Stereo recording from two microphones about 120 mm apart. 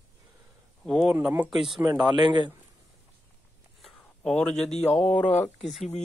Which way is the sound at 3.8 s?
5° left (ahead or behind).